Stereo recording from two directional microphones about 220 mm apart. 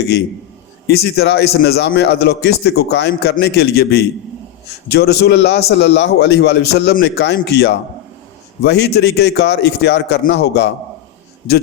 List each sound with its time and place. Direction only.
0.9 s a man's voice: 45° left (ahead or behind)